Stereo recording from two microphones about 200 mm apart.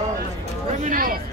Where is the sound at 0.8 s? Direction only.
45° right (ahead or behind).